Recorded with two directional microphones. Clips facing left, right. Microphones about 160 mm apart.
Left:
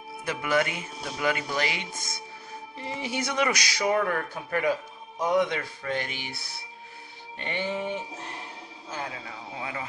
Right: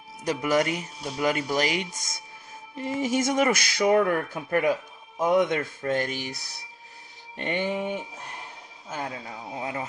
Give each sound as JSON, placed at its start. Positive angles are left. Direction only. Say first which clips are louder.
{"t": 0.2, "sound": "speech", "louder": "right 3 dB", "side_deg": -40}
{"t": 1.9, "sound": "speech", "louder": "left 3 dB", "side_deg": 55}
{"t": 2.8, "sound": "speech", "louder": "right 7 dB", "side_deg": -45}
{"t": 7.7, "sound": "speech", "louder": "right 2 dB", "side_deg": -10}
{"t": 9.6, "sound": "speech", "louder": "right 4 dB", "side_deg": -40}